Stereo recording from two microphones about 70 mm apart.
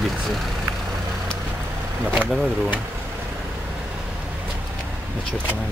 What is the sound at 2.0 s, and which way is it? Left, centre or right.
Speech, right.